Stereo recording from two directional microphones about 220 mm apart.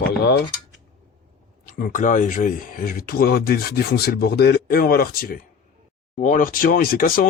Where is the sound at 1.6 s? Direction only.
40° left (ahead or behind).